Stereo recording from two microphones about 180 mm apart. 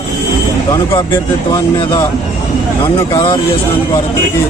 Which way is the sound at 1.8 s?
25° left (ahead or behind).